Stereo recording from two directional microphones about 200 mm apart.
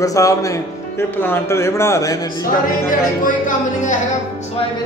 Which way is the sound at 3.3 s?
40° left (ahead or behind).